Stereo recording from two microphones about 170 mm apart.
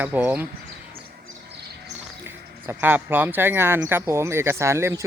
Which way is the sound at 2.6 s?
10° right (ahead or behind).